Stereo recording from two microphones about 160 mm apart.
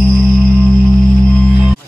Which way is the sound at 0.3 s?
5° left (ahead or behind).